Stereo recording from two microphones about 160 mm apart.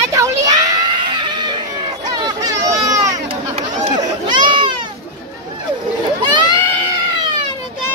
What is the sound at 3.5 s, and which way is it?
Run, 35° right (ahead or behind).